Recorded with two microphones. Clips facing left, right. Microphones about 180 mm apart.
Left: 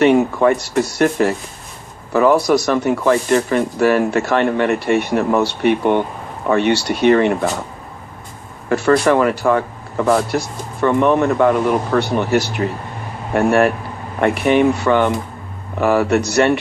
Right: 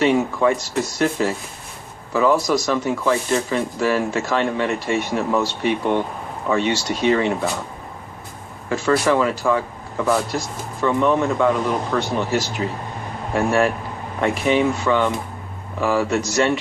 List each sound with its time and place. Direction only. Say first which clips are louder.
0.0 s speech: left 5 dB; 60° left (ahead or behind)
8.7 s speech: left 4 dB; 60° left (ahead or behind)